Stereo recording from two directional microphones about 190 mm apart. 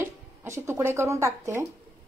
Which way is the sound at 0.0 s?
10° right (ahead or behind).